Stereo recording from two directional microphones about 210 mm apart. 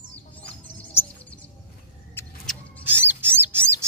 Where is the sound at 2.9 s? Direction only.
10° right (ahead or behind).